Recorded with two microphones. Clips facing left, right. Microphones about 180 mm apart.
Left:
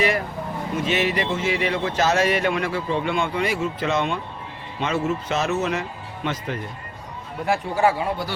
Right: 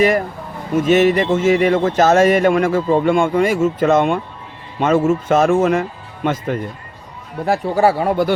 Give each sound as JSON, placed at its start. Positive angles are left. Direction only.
{"t": 0.8, "sound": "a man's voice", "side_deg": -45}
{"t": 7.4, "sound": "speech", "side_deg": -35}